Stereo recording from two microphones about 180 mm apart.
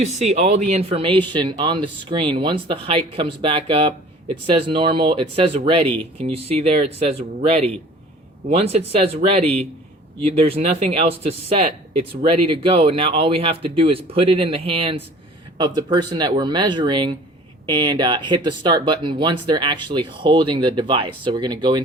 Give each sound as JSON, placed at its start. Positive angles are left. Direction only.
{"t": 0.3, "sound": "speech", "side_deg": -35}